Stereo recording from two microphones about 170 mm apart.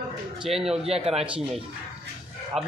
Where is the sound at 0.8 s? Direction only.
35° right (ahead or behind).